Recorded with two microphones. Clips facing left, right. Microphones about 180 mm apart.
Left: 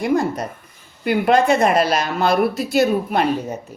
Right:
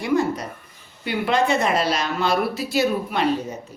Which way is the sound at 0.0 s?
50° left (ahead or behind).